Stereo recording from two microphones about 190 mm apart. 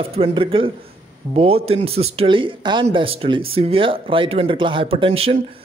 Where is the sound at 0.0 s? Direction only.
30° right (ahead or behind).